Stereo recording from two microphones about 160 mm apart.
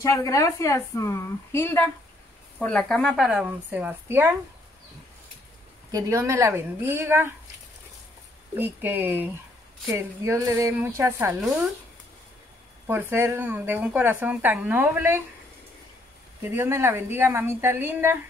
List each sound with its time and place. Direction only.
0.0 s a woman's voice: 20° left (ahead or behind); by 4.4 s 10° right (ahead or behind)
5.9 s speech: 20° right (ahead or behind)
8.5 s speech: 10° right (ahead or behind)
12.8 s speech: 15° right (ahead or behind)
16.5 s speech: 15° right (ahead or behind)